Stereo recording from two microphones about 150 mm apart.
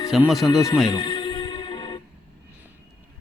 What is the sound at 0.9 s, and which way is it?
Music, 30° left (ahead or behind).